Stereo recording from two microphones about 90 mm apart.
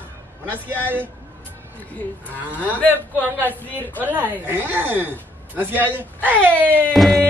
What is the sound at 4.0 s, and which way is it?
A woman's voice, 20° right (ahead or behind).